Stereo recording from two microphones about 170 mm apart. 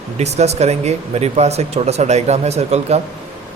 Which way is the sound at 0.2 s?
40° right (ahead or behind).